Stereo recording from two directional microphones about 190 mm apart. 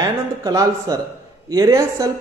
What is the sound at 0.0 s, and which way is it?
A man's voice, 20° right (ahead or behind).